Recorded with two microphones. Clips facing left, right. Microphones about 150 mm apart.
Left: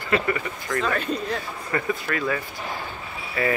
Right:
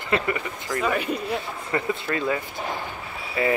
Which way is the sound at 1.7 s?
20° right (ahead or behind).